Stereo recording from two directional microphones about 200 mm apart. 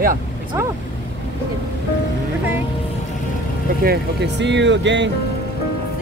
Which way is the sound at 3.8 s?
55° right (ahead or behind).